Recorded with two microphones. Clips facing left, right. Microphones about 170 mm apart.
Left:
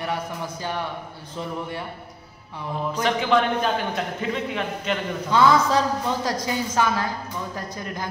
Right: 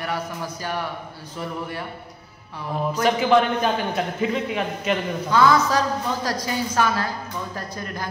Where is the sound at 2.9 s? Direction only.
10° right (ahead or behind).